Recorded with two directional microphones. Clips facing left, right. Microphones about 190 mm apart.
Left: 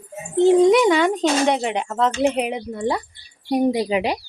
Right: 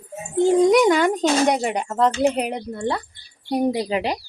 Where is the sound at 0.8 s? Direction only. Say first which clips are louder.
Even; 5° right (ahead or behind).